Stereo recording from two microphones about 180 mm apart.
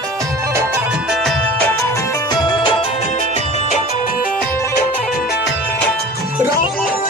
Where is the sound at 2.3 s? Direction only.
25° left (ahead or behind).